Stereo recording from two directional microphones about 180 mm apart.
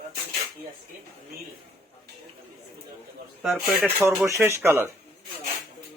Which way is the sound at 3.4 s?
5° right (ahead or behind).